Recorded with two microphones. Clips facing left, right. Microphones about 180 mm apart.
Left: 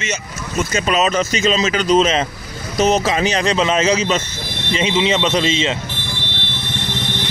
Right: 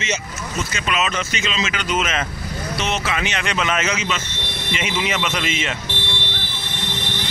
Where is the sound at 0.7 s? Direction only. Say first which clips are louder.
Left 7 dB; 40° left (ahead or behind).